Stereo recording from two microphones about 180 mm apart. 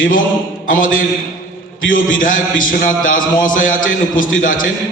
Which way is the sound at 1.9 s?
50° left (ahead or behind).